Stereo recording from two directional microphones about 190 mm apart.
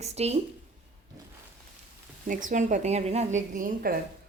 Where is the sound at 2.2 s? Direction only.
45° right (ahead or behind).